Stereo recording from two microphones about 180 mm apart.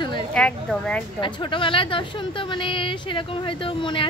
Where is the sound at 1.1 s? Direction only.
25° left (ahead or behind).